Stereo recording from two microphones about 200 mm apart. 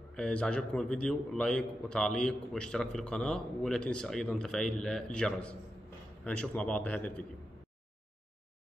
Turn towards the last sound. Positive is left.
turn(degrees=5)  # may be behind; listen again after turning